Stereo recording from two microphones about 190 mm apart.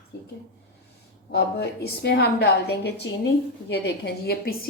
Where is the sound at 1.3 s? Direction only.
60° left (ahead or behind).